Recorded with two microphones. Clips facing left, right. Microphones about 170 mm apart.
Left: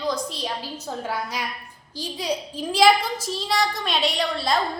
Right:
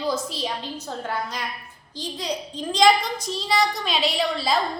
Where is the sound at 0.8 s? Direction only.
10° left (ahead or behind).